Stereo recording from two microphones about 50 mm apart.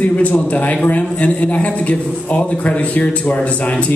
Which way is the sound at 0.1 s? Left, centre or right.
Left.